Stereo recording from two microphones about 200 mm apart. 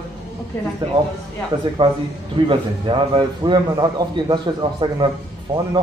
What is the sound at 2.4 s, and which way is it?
A man's voice, 25° right (ahead or behind).